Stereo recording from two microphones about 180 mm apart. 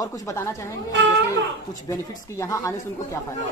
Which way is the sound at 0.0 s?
15° left (ahead or behind).